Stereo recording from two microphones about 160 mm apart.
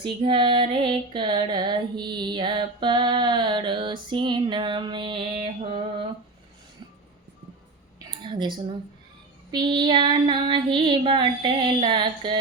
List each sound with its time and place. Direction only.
0.0 s female singing: 30° right (ahead or behind)
7.9 s a sound: 30° right (ahead or behind)
9.5 s female singing: 25° right (ahead or behind)